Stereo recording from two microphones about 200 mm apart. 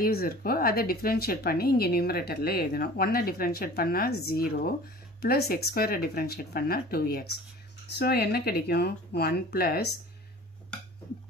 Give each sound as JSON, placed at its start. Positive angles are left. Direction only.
{"t": 0.0, "sound": "speech", "side_deg": 50}